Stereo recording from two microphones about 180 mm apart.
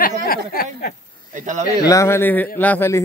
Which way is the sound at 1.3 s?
45° right (ahead or behind).